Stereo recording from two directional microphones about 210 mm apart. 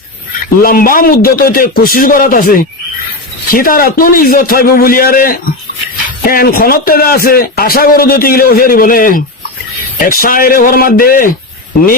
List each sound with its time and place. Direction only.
0.6 s speech: 45° left (ahead or behind)